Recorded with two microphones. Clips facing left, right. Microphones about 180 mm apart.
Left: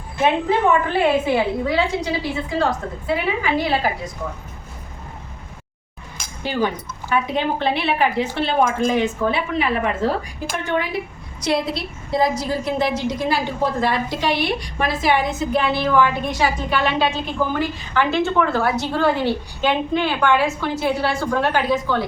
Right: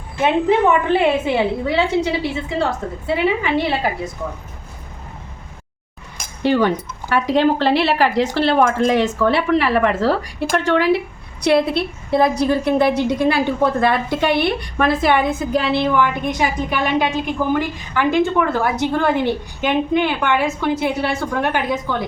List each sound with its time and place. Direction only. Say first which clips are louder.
0.7 s a woman's voice: right 2 dB; 25° right (ahead or behind)
6.4 s a woman's voice: right 6 dB; 70° right (ahead or behind); by 15.4 s 55° right (ahead or behind)
15.7 s a woman's voice: right 1 dB; 20° right (ahead or behind)